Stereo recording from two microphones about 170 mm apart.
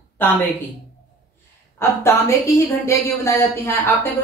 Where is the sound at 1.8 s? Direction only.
15° left (ahead or behind).